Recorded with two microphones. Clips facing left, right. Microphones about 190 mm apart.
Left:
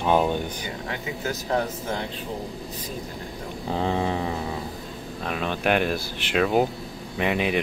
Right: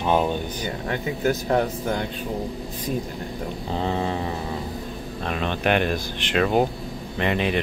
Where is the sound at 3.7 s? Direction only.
10° left (ahead or behind).